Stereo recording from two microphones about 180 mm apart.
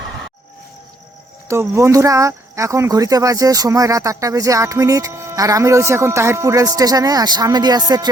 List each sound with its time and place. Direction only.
1.5 s speech: 15° right (ahead or behind)